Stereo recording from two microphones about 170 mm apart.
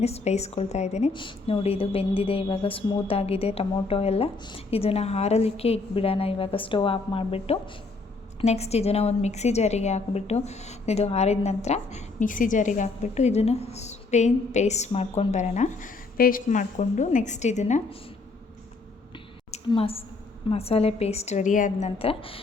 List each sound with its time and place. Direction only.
0.0 s a woman's voice: 40° left (ahead or behind)
1.1 s a woman's voice: 30° left (ahead or behind)
19.5 s a woman's voice: 35° left (ahead or behind)